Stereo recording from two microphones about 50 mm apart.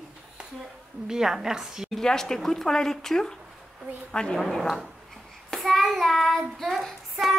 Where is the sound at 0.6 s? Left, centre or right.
Centre.